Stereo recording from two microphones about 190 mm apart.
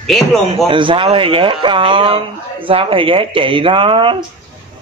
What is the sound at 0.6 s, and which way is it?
A man's voice, 25° right (ahead or behind).